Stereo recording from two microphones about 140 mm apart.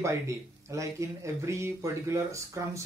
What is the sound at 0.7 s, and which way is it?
Speech, 20° right (ahead or behind).